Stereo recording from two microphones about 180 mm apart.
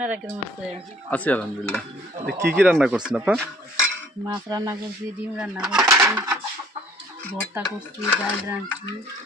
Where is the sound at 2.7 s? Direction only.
5° right (ahead or behind).